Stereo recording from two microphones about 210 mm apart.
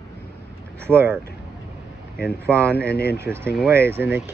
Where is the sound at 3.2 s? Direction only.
10° right (ahead or behind).